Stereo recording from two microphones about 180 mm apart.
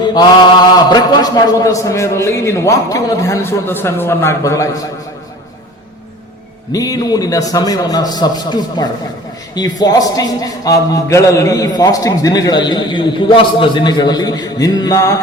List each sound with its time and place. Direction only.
0.0 s mantra: 25° left (ahead or behind)
0.9 s a man's voice: 20° left (ahead or behind)
6.7 s a man's voice: 20° left (ahead or behind)